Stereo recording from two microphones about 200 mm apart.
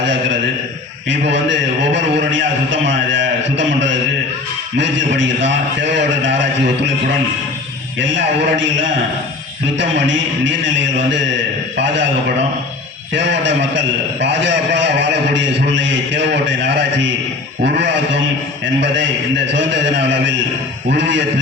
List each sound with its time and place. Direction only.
0.0 s a man's voice: 60° right (ahead or behind)
7.9 s a man's voice: 65° right (ahead or behind)
9.7 s a man's voice: 65° right (ahead or behind)
13.1 s a man's voice: 65° right (ahead or behind)